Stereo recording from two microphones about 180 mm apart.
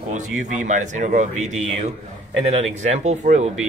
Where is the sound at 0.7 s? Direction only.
45° right (ahead or behind).